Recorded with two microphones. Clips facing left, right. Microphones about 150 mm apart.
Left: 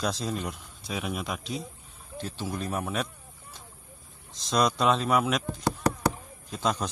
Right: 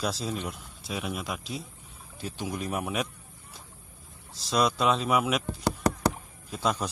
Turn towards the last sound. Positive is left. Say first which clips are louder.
# even
turn(degrees=-5)  # may be behind; listen again after turning